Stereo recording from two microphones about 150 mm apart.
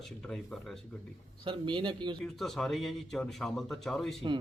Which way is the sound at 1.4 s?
30° right (ahead or behind).